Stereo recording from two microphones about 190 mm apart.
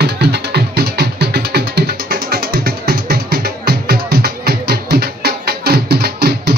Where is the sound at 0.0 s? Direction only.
60° right (ahead or behind).